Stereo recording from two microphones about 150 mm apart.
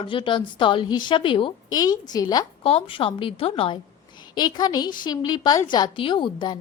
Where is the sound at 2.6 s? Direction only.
35° left (ahead or behind).